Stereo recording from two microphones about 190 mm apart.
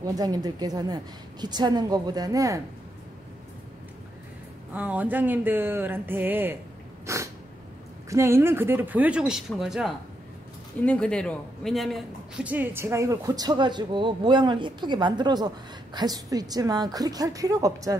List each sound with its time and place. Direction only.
0.0 s a man's voice: 20° right (ahead or behind)
4.7 s speech: 10° right (ahead or behind)
7.1 s cat: 15° right (ahead or behind)
8.1 s a man's voice: 15° right (ahead or behind)